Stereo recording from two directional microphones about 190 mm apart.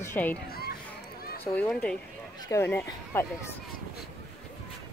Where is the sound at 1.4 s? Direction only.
5° left (ahead or behind).